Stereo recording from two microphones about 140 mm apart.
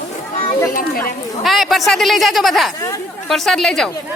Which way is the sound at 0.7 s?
90° left.